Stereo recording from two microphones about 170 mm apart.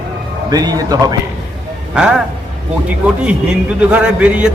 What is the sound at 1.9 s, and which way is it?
Speech, 5° right (ahead or behind).